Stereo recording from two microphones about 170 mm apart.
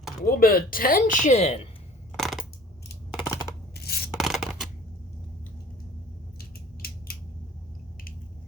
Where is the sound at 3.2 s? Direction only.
20° left (ahead or behind).